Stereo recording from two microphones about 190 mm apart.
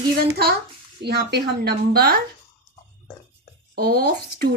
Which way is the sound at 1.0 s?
60° right (ahead or behind).